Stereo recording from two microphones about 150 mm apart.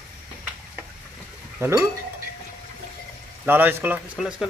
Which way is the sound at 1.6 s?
20° right (ahead or behind).